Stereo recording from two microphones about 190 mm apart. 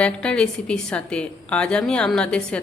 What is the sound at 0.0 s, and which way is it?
Speech, 5° left (ahead or behind).